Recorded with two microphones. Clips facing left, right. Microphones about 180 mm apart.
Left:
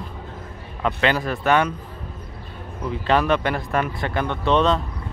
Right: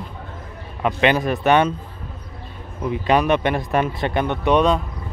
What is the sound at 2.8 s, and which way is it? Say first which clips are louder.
Speech: right 2 dB; 15° right (ahead or behind).